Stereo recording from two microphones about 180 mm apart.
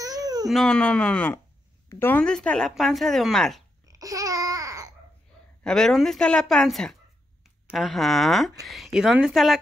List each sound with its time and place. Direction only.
0.5 s speech: centre (ahead or behind)
3.8 s babbling: 20° right (ahead or behind)
5.6 s speech: 5° left (ahead or behind)